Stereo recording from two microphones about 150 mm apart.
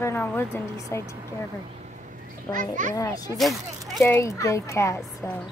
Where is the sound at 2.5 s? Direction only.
60° right (ahead or behind).